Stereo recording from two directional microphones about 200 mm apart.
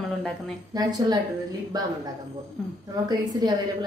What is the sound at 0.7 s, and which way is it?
A woman's voice, 20° right (ahead or behind).